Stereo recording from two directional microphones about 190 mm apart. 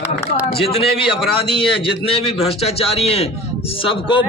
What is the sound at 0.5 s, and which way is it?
A man's voice, 30° left (ahead or behind).